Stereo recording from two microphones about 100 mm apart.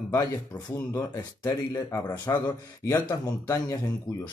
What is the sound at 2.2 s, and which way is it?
Speech, 45° left (ahead or behind).